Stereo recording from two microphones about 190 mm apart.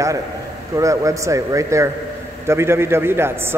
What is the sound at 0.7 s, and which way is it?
A man's voice, 15° right (ahead or behind).